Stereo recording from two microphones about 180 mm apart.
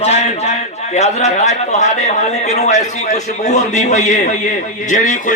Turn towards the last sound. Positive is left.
turn(degrees=45)  # may be behind; listen again after turning